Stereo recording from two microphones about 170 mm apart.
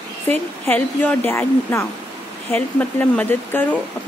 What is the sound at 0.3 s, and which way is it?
A woman's voice, 10° left (ahead or behind).